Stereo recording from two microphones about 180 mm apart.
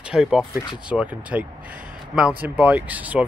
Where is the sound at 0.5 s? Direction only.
25° left (ahead or behind).